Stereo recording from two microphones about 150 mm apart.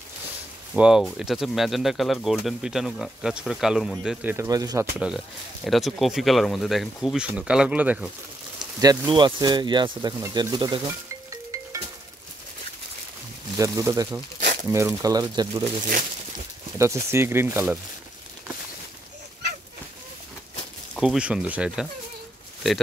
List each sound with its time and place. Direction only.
0.7 s speech: 5° right (ahead or behind)
4.5 s speech: 25° right (ahead or behind)
4.9 s speech: 5° right (ahead or behind)
8.5 s speech: 30° right (ahead or behind)
13.6 s speech: 20° right (ahead or behind)
14.4 s a sound: 55° right (ahead or behind)
14.7 s speech: 20° right (ahead or behind)
16.7 s speech: 20° right (ahead or behind)
20.9 s speech: 5° right (ahead or behind)